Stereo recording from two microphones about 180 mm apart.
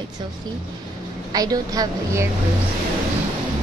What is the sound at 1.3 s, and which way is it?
Speech, 20° right (ahead or behind).